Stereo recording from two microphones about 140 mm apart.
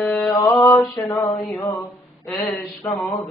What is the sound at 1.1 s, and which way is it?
Mantra, 20° left (ahead or behind).